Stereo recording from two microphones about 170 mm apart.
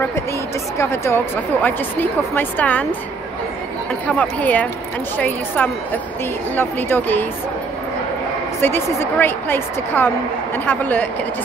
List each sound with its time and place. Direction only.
0.7 s a woman's voice: 15° left (ahead or behind)
4.1 s a woman's voice: 10° left (ahead or behind)
8.5 s a woman's voice: 15° left (ahead or behind)